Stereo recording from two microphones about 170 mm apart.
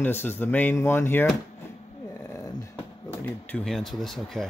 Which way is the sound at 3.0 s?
10° left (ahead or behind).